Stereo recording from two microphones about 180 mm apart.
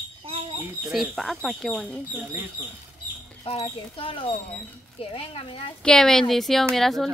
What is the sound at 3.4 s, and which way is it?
Speech, 30° left (ahead or behind).